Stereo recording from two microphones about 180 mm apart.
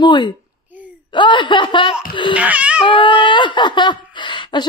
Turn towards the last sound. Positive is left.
turn(degrees=25)  # may be behind; listen again after turning